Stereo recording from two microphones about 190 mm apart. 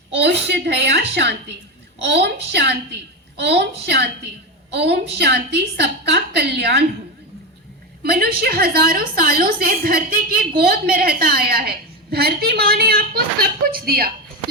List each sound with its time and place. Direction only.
0.2 s a woman's voice: 60° right (ahead or behind)
8.0 s a woman's voice: 55° right (ahead or behind)